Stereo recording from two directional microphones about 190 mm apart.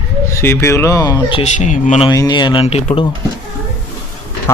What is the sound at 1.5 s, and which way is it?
Speech, 40° left (ahead or behind).